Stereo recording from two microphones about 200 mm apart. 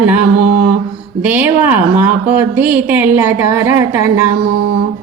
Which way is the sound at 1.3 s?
10° right (ahead or behind).